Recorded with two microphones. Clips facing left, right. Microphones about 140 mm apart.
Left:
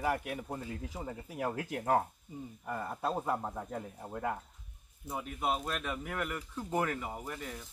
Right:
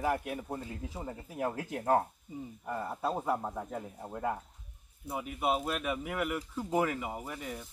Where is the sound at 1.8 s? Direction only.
10° right (ahead or behind).